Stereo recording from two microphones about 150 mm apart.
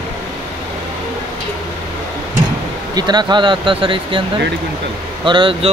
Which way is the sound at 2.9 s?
30° right (ahead or behind).